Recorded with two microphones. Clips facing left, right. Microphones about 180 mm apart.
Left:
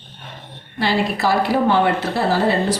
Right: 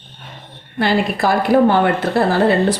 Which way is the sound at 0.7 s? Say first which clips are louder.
Right 3 dB; 55° right (ahead or behind).